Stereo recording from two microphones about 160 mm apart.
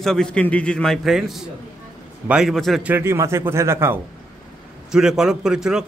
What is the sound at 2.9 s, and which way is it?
Speech, 15° right (ahead or behind).